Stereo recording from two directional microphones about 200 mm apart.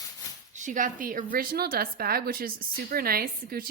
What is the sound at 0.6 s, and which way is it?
A woman's voice, 40° right (ahead or behind).